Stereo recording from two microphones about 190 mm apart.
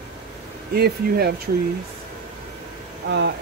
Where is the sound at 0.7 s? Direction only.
55° right (ahead or behind).